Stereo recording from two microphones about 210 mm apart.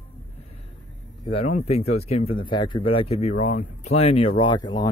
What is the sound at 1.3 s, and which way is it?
Speech, 30° left (ahead or behind).